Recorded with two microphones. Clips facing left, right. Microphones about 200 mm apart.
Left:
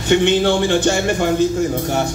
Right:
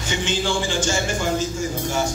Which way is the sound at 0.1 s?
60° left (ahead or behind).